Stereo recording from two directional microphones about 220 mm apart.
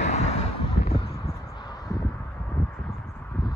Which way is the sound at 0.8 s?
20° left (ahead or behind).